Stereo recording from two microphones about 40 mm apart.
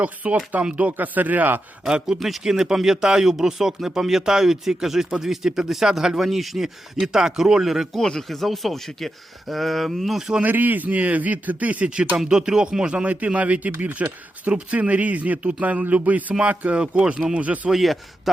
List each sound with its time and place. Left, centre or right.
0.0 s a man's voice: right
2.1 s speech: centre
2.4 s speech: centre
6.9 s speech: centre
7.9 s speech: centre
10.4 s a man's voice: right
12.2 s a man's voice: centre; by 16.2 s right
16.5 s speech: right
17.7 s speech: centre